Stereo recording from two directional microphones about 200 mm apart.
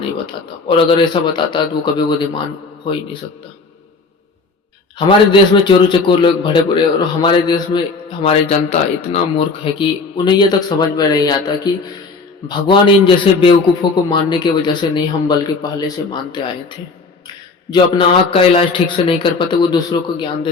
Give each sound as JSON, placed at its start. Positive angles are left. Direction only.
{"t": 0.0, "sound": "a man's voice", "side_deg": 25}
{"t": 4.9, "sound": "a man's voice", "side_deg": 25}
{"t": 8.2, "sound": "a man's voice", "side_deg": 30}